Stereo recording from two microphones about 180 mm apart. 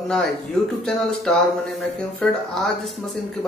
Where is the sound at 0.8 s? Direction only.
5° left (ahead or behind).